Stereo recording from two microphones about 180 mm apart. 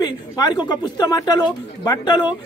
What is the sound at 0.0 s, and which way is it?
Speech, 25° left (ahead or behind).